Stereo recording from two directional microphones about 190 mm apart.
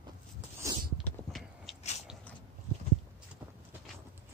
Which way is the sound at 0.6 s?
15° right (ahead or behind).